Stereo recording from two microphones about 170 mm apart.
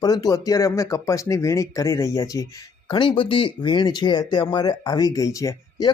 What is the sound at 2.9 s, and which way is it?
Speech, 30° left (ahead or behind).